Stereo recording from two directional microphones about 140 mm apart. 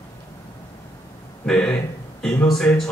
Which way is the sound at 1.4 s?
5° left (ahead or behind).